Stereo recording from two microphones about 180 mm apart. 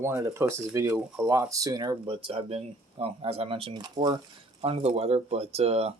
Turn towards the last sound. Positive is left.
turn(degrees=-35)  # may be behind; listen again after turning